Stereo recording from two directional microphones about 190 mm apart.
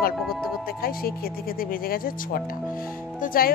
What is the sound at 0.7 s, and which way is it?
A woman's voice, 50° left (ahead or behind).